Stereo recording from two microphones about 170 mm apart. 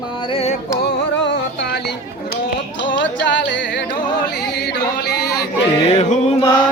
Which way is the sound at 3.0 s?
90° left.